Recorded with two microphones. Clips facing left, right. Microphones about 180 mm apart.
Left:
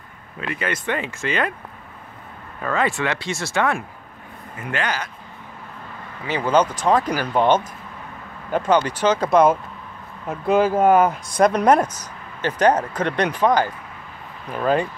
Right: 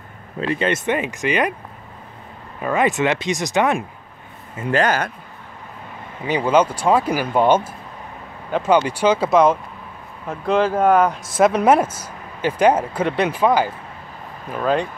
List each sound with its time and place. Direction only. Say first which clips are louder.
0.4 s speech: right 6 dB; 30° right (ahead or behind)
2.6 s speech: right 4 dB; 15° right (ahead or behind)
4.6 s speech: right 7 dB; 35° right (ahead or behind)
6.2 s speech: right 2 dB; 15° right (ahead or behind)
14.5 s speech: even; centre (ahead or behind)